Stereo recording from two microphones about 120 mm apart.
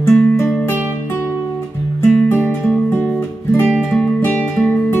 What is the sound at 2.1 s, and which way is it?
Guitar, 15° left (ahead or behind).